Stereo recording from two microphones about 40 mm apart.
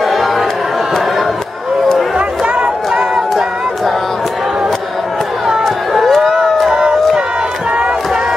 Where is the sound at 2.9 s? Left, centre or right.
Centre.